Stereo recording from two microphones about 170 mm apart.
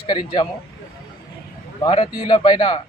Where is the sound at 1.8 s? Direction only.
35° left (ahead or behind).